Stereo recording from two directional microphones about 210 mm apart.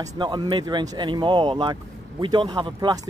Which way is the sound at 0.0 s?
20° right (ahead or behind).